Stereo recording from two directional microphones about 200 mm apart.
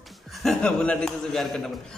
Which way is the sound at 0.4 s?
5° left (ahead or behind).